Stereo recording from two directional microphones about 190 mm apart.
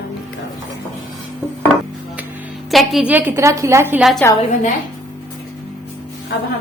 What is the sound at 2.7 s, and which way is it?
A woman's voice, centre (ahead or behind).